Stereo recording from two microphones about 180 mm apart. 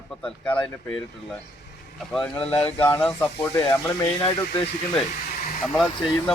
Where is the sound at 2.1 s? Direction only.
5° left (ahead or behind).